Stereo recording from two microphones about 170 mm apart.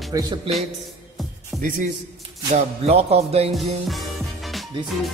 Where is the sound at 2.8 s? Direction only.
35° right (ahead or behind).